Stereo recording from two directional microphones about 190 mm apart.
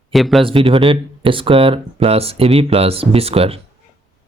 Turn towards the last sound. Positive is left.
turn(degrees=-30)  # may be behind; listen again after turning